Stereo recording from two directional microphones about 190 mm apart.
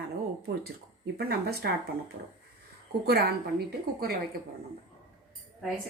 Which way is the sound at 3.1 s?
55° right (ahead or behind).